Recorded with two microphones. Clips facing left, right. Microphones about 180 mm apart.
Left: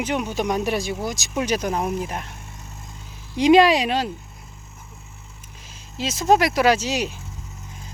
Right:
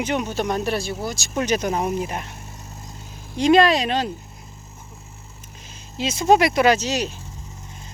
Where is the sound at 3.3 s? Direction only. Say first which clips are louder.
Left 1 dB; 15° left (ahead or behind).